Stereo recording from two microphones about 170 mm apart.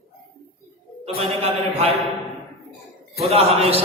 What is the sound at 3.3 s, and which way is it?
Speech, 35° right (ahead or behind).